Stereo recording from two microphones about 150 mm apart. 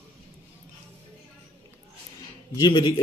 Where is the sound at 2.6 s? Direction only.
25° left (ahead or behind).